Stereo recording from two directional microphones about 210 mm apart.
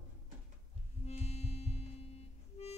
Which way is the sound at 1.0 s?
30° left (ahead or behind).